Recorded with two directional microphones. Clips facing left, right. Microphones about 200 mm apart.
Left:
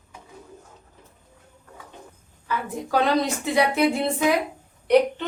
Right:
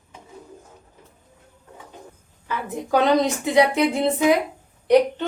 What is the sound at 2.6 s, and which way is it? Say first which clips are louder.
A woman's voice: right 4 dB; 20° right (ahead or behind).